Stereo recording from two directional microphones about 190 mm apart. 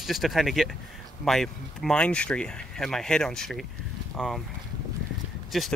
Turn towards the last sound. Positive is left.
turn(degrees=0)  # may be behind; listen again after turning